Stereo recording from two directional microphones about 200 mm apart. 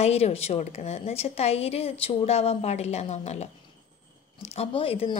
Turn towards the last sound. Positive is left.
turn(degrees=30)  # may be behind; listen again after turning